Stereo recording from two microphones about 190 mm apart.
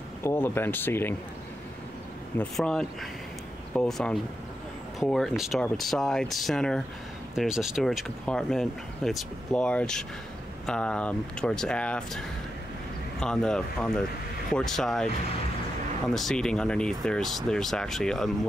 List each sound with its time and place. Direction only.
0.2 s speech: 15° left (ahead or behind)
2.3 s speech: 5° left (ahead or behind)
16.1 s speech: centre (ahead or behind)